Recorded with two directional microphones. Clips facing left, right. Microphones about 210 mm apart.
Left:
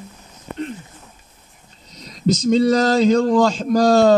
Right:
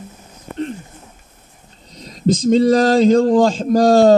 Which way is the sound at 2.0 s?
45° right (ahead or behind).